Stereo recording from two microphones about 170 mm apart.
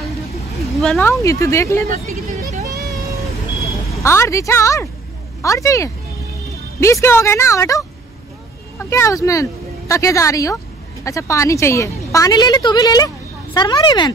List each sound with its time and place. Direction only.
0.7 s speech: centre (ahead or behind)
1.0 s speech: 20° left (ahead or behind)
4.0 s a woman's voice: 15° left (ahead or behind)